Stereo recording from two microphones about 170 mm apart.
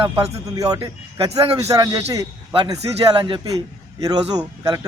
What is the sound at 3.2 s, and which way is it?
Speech, 30° right (ahead or behind).